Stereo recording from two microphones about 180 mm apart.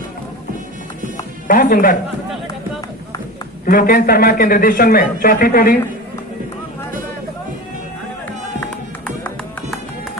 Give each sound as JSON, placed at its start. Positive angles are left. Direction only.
{"t": 1.5, "sound": "a man's voice", "side_deg": 50}
{"t": 3.6, "sound": "a man's voice", "side_deg": 55}
{"t": 9.0, "sound": "music", "side_deg": 5}